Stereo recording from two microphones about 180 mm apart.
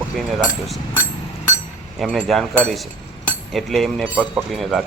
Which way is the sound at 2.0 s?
Centre (ahead or behind).